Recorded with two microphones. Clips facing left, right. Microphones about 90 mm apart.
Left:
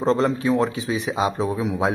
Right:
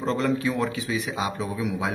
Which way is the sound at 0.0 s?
30° left (ahead or behind).